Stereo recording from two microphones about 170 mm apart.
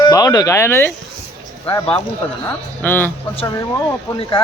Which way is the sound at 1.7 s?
30° left (ahead or behind).